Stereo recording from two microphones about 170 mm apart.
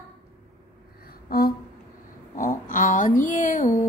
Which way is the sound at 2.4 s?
50° left (ahead or behind).